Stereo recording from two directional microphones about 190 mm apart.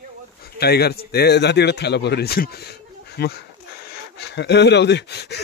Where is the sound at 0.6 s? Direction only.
55° left (ahead or behind).